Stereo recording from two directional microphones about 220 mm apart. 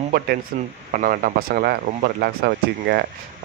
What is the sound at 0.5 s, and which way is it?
Speech, 40° right (ahead or behind).